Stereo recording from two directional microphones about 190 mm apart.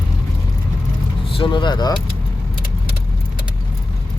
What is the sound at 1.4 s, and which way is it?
Speech, 25° left (ahead or behind).